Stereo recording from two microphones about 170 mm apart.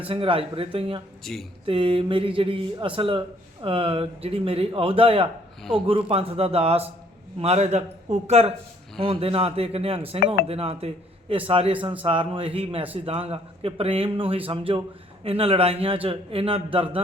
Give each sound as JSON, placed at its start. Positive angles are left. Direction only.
{"t": 0.0, "sound": "speech", "side_deg": -30}
{"t": 1.2, "sound": "speech", "side_deg": 0}
{"t": 1.6, "sound": "speech", "side_deg": -30}